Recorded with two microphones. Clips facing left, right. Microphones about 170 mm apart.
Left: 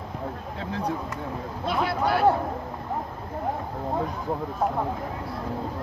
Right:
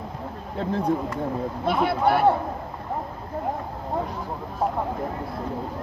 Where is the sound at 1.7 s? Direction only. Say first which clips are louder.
Right 3 dB; 60° right (ahead or behind).